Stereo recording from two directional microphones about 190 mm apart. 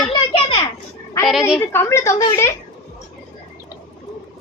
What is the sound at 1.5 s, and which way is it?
A woman's voice, 10° left (ahead or behind).